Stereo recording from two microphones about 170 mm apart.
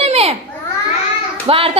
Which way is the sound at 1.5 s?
35° right (ahead or behind).